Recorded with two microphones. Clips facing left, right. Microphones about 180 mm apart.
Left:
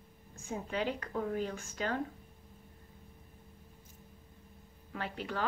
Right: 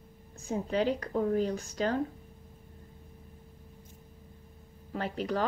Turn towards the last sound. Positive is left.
turn(degrees=-40)  # may be behind; listen again after turning